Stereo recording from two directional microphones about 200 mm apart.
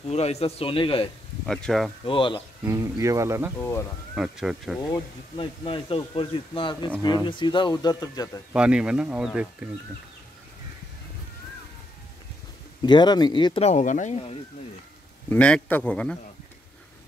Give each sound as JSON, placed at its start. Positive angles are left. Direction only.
{"t": 0.0, "sound": "speech", "side_deg": 30}
{"t": 1.4, "sound": "speech", "side_deg": 0}
{"t": 2.0, "sound": "speech", "side_deg": 25}
{"t": 2.6, "sound": "speech", "side_deg": -15}
{"t": 3.5, "sound": "speech", "side_deg": 10}
{"t": 4.1, "sound": "speech", "side_deg": -5}
{"t": 4.9, "sound": "speech", "side_deg": 25}
{"t": 8.5, "sound": "speech", "side_deg": -5}
{"t": 12.8, "sound": "speech", "side_deg": 20}
{"t": 15.2, "sound": "speech", "side_deg": 5}